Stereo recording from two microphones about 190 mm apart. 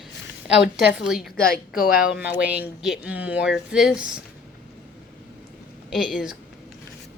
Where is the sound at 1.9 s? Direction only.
50° left (ahead or behind).